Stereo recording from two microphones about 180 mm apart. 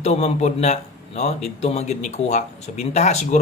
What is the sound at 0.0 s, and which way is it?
Speech, 35° left (ahead or behind).